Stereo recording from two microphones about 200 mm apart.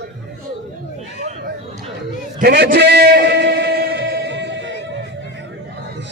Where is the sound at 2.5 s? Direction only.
55° right (ahead or behind).